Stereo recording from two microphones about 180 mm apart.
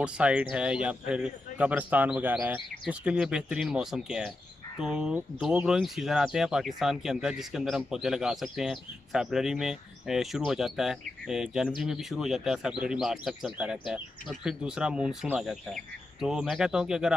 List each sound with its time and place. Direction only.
0.0 s a man's voice: 5° right (ahead or behind)